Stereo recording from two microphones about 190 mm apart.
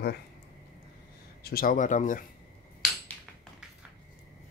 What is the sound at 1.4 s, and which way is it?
Speech, 50° left (ahead or behind).